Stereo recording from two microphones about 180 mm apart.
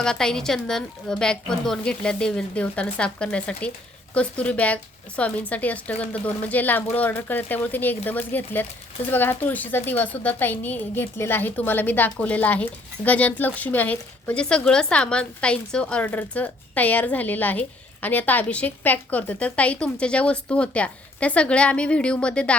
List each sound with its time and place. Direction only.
0.0 s a woman's voice: 5° left (ahead or behind)